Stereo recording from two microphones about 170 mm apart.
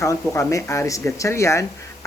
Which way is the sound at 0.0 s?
20° left (ahead or behind).